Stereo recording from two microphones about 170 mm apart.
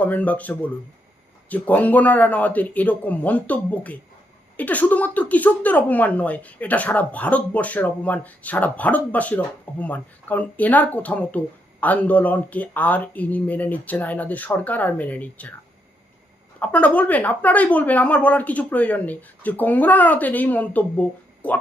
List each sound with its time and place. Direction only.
0.0 s speech: 10° left (ahead or behind)
16.6 s speech: 10° left (ahead or behind)